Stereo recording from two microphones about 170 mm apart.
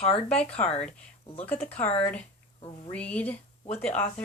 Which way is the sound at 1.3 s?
35° left (ahead or behind).